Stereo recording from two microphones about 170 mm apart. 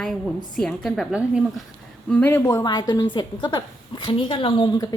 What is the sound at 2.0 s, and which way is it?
A woman's voice, 10° left (ahead or behind).